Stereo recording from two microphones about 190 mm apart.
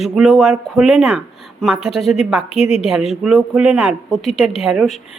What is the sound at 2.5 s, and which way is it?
Speech, 30° left (ahead or behind).